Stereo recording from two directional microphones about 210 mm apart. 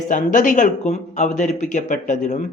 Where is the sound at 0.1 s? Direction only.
40° left (ahead or behind).